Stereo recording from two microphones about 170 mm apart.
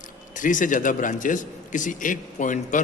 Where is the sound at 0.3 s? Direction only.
50° left (ahead or behind).